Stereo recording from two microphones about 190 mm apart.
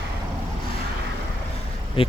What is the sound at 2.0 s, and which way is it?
Speech, 30° left (ahead or behind).